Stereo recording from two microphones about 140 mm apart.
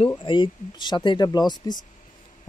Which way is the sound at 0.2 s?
35° left (ahead or behind).